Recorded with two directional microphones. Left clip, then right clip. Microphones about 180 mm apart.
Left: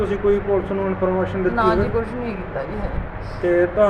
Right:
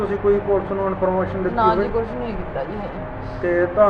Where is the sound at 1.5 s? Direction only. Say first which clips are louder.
Right 2 dB; 15° left (ahead or behind).